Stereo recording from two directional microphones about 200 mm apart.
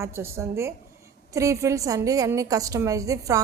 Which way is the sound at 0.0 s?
15° right (ahead or behind).